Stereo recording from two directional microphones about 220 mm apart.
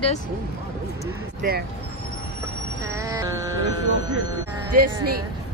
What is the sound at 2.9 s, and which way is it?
Music, 15° right (ahead or behind).